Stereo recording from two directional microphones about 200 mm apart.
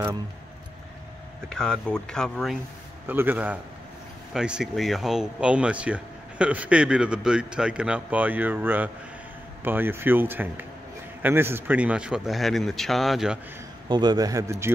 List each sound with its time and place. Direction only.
1.5 s a man's voice: 5° left (ahead or behind)
13.8 s speech: 20° right (ahead or behind)